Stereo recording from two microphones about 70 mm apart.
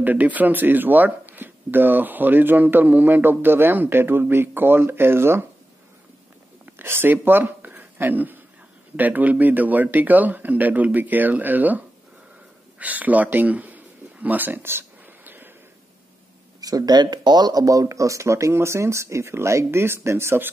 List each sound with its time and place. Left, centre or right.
0.0 s speech: right
6.6 s speech: right
12.7 s a sound: right
16.6 s speech: right